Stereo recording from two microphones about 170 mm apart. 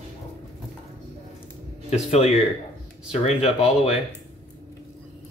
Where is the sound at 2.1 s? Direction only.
40° left (ahead or behind).